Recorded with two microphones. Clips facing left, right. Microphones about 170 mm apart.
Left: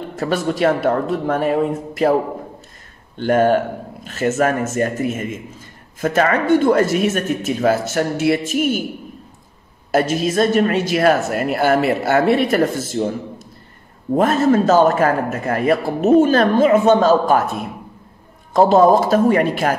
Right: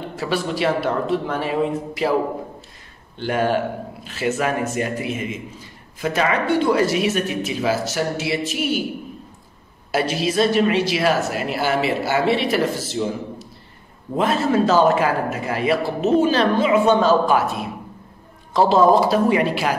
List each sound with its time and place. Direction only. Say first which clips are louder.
0.1 s speech: left 4 dB; 45° left (ahead or behind)
3.2 s speech: left 5 dB; 45° left (ahead or behind)
9.8 s speech: left 4 dB; 50° left (ahead or behind)
14.1 s speech: left 4 dB; 45° left (ahead or behind)